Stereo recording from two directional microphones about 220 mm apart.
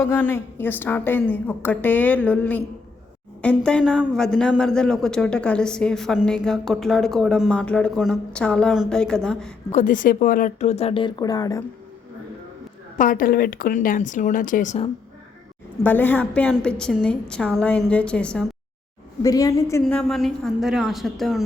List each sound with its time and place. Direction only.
0.0 s a woman's voice: 10° left (ahead or behind)
9.7 s speech: 35° left (ahead or behind); by 11.6 s 15° left (ahead or behind)
13.0 s speech: 40° left (ahead or behind)
15.8 s a man's voice: 10° left (ahead or behind)
19.2 s a woman's voice: 15° left (ahead or behind)
19.8 s a man's voice: 5° left (ahead or behind)